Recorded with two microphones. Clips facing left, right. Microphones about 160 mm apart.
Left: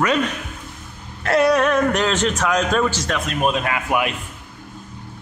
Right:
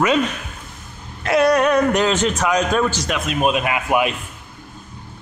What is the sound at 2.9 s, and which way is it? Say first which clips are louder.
Speech: right 1 dB; 15° right (ahead or behind).